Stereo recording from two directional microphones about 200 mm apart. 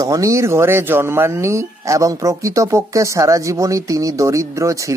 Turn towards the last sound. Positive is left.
turn(degrees=-15)  # may be behind; listen again after turning